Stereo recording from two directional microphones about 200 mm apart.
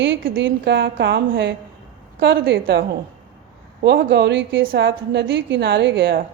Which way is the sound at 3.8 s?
55° right (ahead or behind).